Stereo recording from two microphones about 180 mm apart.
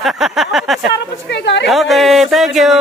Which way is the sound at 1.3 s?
75° left (ahead or behind).